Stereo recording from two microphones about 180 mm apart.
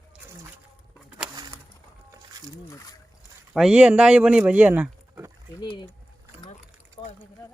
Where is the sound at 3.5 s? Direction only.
5° right (ahead or behind).